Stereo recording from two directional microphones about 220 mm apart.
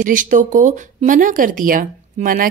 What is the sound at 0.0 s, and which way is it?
Speech, 35° right (ahead or behind).